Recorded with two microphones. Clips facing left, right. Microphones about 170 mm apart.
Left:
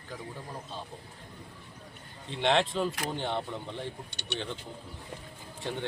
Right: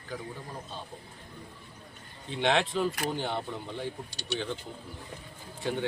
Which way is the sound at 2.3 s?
5° right (ahead or behind).